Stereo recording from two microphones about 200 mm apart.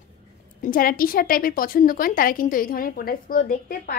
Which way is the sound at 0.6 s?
45° left (ahead or behind).